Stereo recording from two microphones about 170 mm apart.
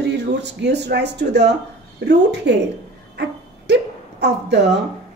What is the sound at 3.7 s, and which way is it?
Speech, 90° right.